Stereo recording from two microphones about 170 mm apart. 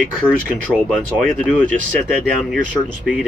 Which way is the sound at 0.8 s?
Centre (ahead or behind).